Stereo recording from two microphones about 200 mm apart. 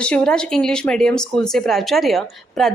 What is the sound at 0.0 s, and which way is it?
A woman's voice, 5° left (ahead or behind).